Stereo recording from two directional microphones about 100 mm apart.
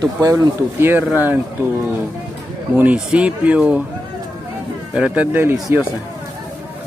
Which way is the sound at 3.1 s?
15° right (ahead or behind).